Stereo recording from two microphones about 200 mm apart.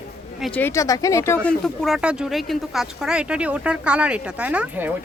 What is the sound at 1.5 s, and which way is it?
Speech, centre (ahead or behind).